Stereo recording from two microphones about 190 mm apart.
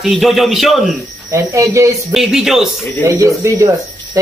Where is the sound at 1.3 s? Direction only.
15° right (ahead or behind).